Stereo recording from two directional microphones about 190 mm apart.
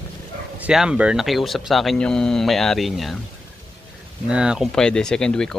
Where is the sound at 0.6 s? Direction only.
5° right (ahead or behind).